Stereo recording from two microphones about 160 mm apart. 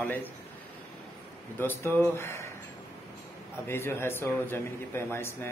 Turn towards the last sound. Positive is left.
turn(degrees=15)  # may be behind; listen again after turning